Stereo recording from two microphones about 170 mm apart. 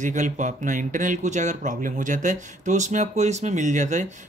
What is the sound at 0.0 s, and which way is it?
Speech, 45° right (ahead or behind).